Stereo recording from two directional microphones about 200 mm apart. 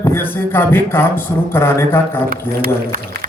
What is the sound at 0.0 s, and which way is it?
A man's voice, 10° left (ahead or behind).